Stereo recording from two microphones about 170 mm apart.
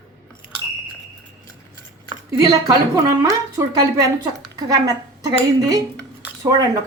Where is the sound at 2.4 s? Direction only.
20° right (ahead or behind).